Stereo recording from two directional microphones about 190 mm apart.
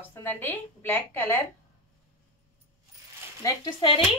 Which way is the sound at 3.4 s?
20° left (ahead or behind).